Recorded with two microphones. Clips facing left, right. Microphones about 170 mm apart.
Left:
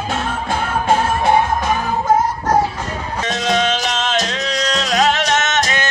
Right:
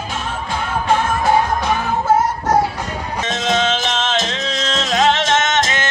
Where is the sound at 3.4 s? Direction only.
20° right (ahead or behind).